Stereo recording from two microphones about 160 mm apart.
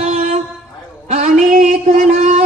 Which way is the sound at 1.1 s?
55° right (ahead or behind).